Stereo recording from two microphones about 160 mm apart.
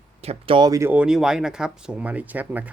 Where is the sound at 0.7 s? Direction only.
15° right (ahead or behind).